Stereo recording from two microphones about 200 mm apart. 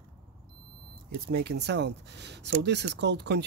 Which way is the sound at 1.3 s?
55° right (ahead or behind).